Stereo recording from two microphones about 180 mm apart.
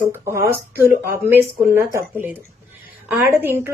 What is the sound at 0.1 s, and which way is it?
Speech, 15° right (ahead or behind).